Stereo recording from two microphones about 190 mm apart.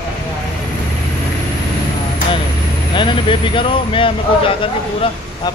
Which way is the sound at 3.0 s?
25° left (ahead or behind).